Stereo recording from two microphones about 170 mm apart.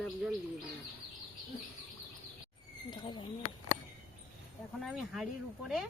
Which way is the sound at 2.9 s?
30° left (ahead or behind).